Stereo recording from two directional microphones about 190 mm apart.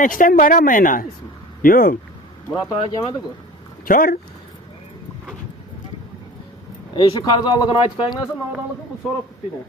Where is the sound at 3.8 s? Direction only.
50° left (ahead or behind).